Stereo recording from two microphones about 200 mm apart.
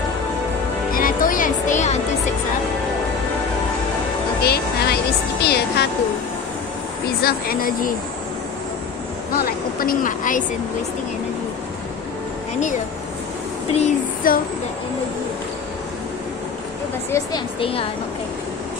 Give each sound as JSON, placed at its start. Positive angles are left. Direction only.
{"t": 0.9, "sound": "music", "side_deg": 45}
{"t": 4.4, "sound": "music", "side_deg": 50}
{"t": 5.4, "sound": "speech", "side_deg": 55}
{"t": 7.2, "sound": "speech", "side_deg": 50}
{"t": 9.8, "sound": "a woman's voice", "side_deg": 45}
{"t": 13.7, "sound": "a sound", "side_deg": 40}
{"t": 17.1, "sound": "a woman's voice", "side_deg": 25}